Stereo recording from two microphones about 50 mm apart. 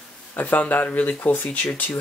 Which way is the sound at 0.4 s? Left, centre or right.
Left.